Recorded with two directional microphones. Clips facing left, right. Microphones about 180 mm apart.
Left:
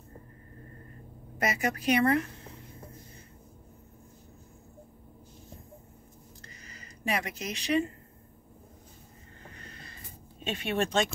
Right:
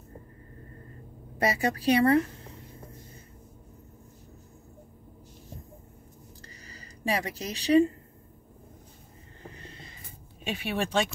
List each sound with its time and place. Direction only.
1.4 s a woman's voice: 30° right (ahead or behind)
6.6 s a sound: 35° right (ahead or behind)
10.4 s speech: 10° right (ahead or behind)